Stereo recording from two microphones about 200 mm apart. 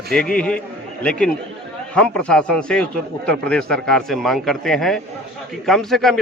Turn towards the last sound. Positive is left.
turn(degrees=0)  # may be behind; listen again after turning